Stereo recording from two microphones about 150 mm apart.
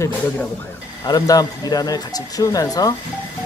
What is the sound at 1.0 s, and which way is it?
Speech, 25° left (ahead or behind).